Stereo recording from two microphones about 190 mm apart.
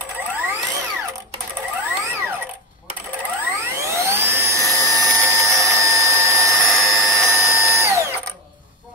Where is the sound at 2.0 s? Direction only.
15° right (ahead or behind).